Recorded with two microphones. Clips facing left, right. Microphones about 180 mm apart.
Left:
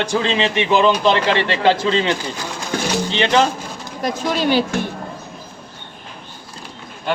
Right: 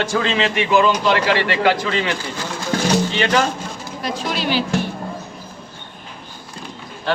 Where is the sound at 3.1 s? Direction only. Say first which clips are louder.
Left 1 dB; 25° left (ahead or behind).